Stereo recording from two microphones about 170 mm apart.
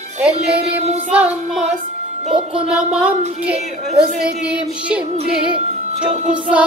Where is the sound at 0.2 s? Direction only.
5° right (ahead or behind).